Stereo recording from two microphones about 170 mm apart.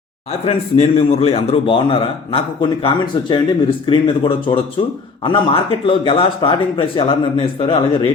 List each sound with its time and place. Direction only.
0.4 s a man's voice: 35° left (ahead or behind)